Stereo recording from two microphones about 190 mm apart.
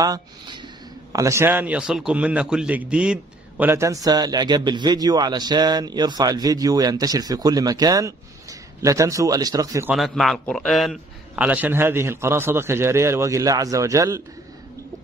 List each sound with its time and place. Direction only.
0.0 s a man's voice: 20° right (ahead or behind)
9.9 s a man's voice: centre (ahead or behind); by 14.2 s 15° right (ahead or behind)